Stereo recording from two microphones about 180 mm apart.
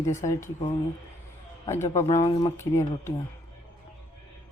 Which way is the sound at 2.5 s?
15° left (ahead or behind).